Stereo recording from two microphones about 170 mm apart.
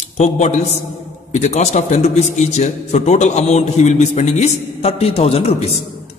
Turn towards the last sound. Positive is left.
turn(degrees=35)  # may be behind; listen again after turning